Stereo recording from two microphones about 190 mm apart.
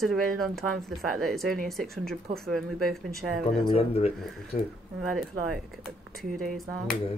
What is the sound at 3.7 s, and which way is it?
Speech, 30° left (ahead or behind).